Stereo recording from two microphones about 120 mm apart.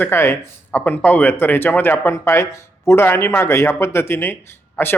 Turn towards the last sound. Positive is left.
turn(degrees=15)  # may be behind; listen again after turning